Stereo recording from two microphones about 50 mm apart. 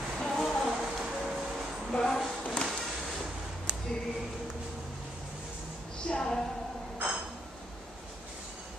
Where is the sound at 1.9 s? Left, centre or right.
Centre.